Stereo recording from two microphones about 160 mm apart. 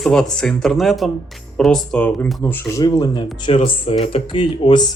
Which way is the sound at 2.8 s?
25° left (ahead or behind).